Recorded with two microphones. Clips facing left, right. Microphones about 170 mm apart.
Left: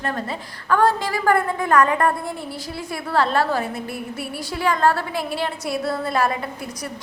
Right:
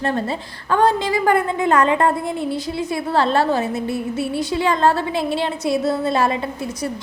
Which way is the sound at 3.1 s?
25° right (ahead or behind).